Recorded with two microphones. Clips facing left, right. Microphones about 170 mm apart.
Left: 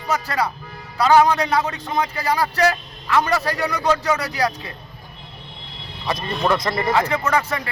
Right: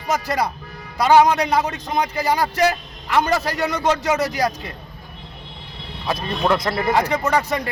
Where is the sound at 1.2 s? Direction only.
20° right (ahead or behind).